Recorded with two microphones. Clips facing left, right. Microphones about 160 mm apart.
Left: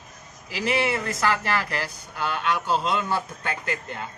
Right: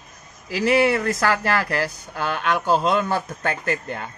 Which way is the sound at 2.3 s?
50° right (ahead or behind).